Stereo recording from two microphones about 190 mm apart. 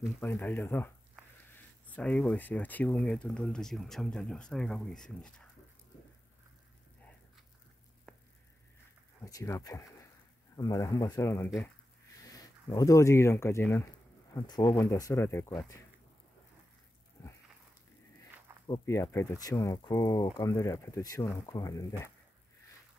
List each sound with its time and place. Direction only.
0.2 s speech: 10° left (ahead or behind)
9.2 s speech: 15° left (ahead or behind)
18.7 s speech: 15° left (ahead or behind)